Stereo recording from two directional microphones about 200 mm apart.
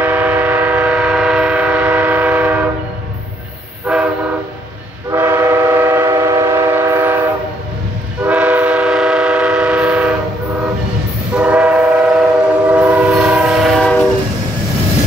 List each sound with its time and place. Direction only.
0.0 s train: 10° right (ahead or behind)
3.8 s train: 5° right (ahead or behind)
5.1 s train: 10° right (ahead or behind)
11.3 s train: 5° right (ahead or behind)